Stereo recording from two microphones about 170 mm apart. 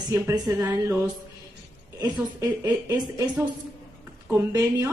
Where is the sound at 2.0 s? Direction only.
15° right (ahead or behind).